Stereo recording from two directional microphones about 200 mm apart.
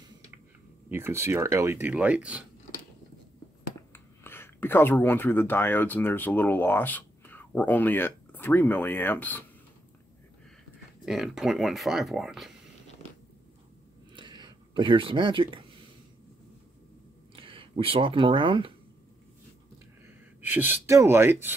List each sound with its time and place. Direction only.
0.8 s speech: 10° right (ahead or behind)
3.9 s speech: 10° left (ahead or behind)
11.1 s speech: centre (ahead or behind)
14.1 s a sound: 25° right (ahead or behind)
17.4 s speech: 25° right (ahead or behind)
20.4 s speech: 10° right (ahead or behind)